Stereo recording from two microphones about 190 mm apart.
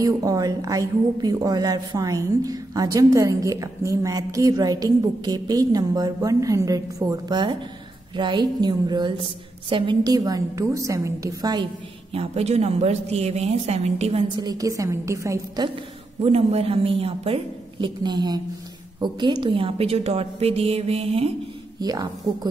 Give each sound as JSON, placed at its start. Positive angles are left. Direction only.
{"t": 0.0, "sound": "a woman's voice", "side_deg": -20}
{"t": 16.2, "sound": "a woman's voice", "side_deg": -30}
{"t": 21.7, "sound": "a woman's voice", "side_deg": -20}